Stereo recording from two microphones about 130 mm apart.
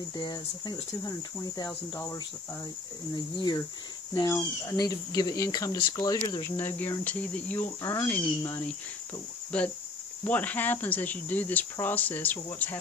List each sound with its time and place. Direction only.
0.2 s speech: 30° left (ahead or behind)
3.3 s speech: 35° left (ahead or behind)
6.4 s speech: 15° left (ahead or behind)
7.8 s speech: 25° left (ahead or behind)